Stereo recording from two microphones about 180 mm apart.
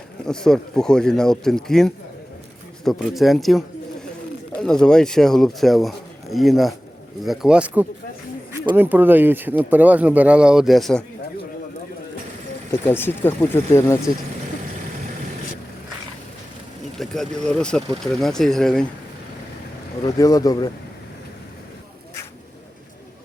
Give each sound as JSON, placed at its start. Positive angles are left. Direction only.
{"t": 0.3, "sound": "speech", "side_deg": 5}
{"t": 4.6, "sound": "speech", "side_deg": 5}
{"t": 12.8, "sound": "speech", "side_deg": 15}
{"t": 17.0, "sound": "speech", "side_deg": 5}
{"t": 20.1, "sound": "speech", "side_deg": 20}